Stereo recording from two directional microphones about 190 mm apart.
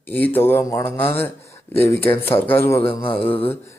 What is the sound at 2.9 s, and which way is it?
Speech, 25° left (ahead or behind).